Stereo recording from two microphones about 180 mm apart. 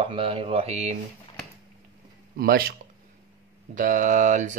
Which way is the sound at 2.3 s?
55° right (ahead or behind).